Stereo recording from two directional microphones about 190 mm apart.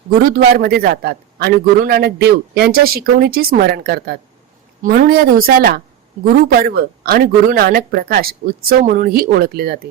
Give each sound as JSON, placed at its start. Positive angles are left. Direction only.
{"t": 0.2, "sound": "a man's voice", "side_deg": -50}